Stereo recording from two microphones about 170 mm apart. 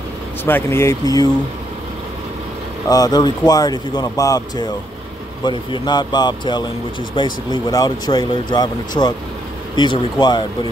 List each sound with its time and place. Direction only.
0.5 s speech: 15° left (ahead or behind)
2.9 s speech: 20° left (ahead or behind)